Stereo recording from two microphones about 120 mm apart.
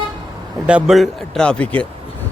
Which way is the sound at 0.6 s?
10° right (ahead or behind).